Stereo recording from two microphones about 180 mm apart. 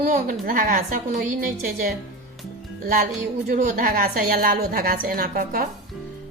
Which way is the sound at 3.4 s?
55° right (ahead or behind).